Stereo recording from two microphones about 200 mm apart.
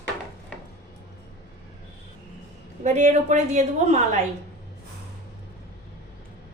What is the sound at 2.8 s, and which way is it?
A woman's voice, 35° right (ahead or behind).